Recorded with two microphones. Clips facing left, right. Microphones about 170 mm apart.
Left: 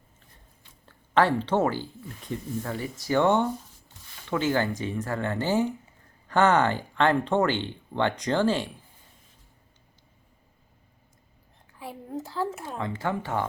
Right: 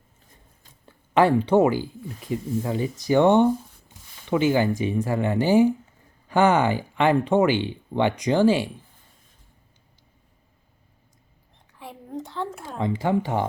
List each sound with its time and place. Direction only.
0.9 s speech: 15° right (ahead or behind)
11.8 s a sound: centre (ahead or behind)
12.7 s speech: 15° right (ahead or behind)